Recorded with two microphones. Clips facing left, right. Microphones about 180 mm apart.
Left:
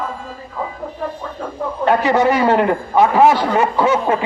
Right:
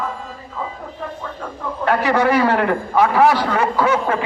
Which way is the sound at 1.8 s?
15° left (ahead or behind).